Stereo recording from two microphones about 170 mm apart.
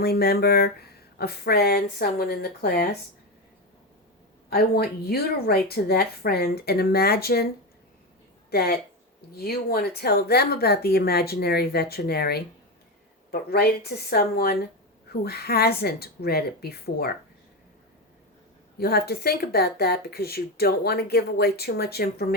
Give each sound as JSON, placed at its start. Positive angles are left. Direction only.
{"t": 0.0, "sound": "speech", "side_deg": 65}
{"t": 4.4, "sound": "speech", "side_deg": 65}
{"t": 8.4, "sound": "speech", "side_deg": 65}
{"t": 18.8, "sound": "speech", "side_deg": 65}